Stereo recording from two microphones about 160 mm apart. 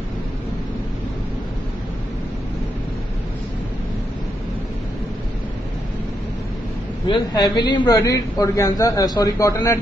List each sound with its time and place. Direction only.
7.1 s a man's voice: 25° left (ahead or behind)